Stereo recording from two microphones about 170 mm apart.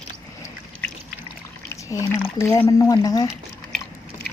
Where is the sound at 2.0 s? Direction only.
15° left (ahead or behind).